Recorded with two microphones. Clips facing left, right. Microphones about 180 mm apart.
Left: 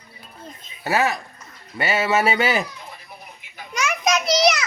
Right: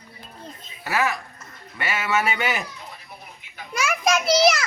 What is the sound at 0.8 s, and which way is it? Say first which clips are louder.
Speech: left 3 dB; 30° left (ahead or behind).